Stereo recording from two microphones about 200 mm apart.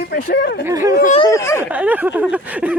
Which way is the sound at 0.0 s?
50° left (ahead or behind).